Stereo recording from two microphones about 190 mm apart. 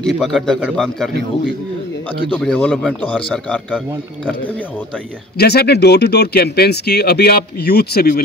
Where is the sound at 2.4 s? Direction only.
5° left (ahead or behind).